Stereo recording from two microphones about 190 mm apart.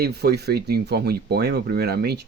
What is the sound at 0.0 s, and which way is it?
Speech, 60° right (ahead or behind).